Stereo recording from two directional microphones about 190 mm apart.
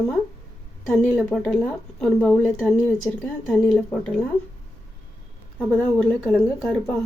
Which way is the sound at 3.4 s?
Centre (ahead or behind).